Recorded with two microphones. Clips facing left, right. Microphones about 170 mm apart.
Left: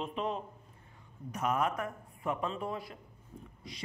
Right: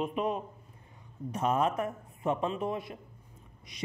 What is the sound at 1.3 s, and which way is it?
A man's voice, 25° right (ahead or behind).